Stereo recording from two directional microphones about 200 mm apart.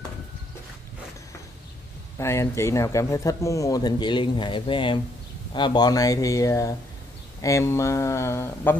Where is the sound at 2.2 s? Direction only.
15° left (ahead or behind).